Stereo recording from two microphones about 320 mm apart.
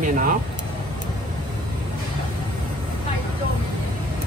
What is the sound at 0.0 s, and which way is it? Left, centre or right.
Speech, right.